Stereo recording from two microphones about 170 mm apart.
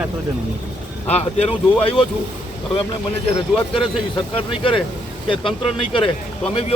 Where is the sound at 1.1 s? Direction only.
35° left (ahead or behind).